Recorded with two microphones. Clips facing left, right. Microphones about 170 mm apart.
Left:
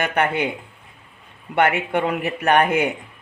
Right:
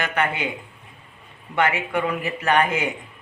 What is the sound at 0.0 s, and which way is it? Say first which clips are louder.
Speech: left 4 dB; 55° left (ahead or behind).